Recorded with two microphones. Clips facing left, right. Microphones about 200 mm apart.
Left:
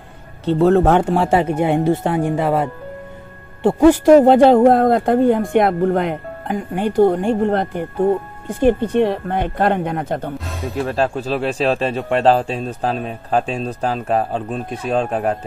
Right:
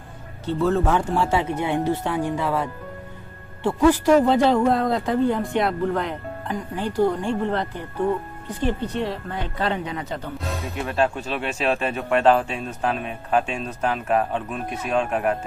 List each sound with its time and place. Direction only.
0.5 s speech: 65° left (ahead or behind)
10.4 s music: centre (ahead or behind)
10.7 s speech: 35° left (ahead or behind)